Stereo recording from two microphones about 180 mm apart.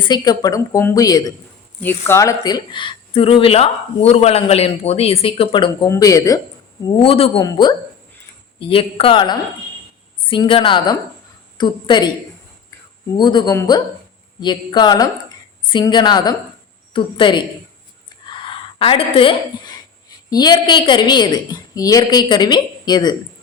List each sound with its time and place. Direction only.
0.1 s a woman's voice: 20° left (ahead or behind)
6.8 s a woman's voice: 30° left (ahead or behind)
13.1 s a woman's voice: 25° left (ahead or behind)